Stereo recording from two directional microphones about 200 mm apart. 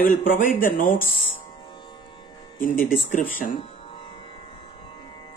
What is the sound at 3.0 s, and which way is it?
Speech, 40° left (ahead or behind).